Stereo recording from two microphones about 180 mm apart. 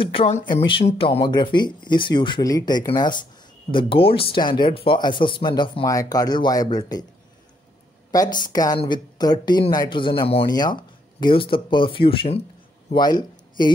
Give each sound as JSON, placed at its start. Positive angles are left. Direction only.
{"t": 0.0, "sound": "speech", "side_deg": 30}
{"t": 8.1, "sound": "speech", "side_deg": 20}